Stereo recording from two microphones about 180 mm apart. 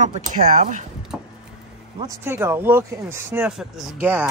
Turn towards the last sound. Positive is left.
turn(degrees=-10)  # may be behind; listen again after turning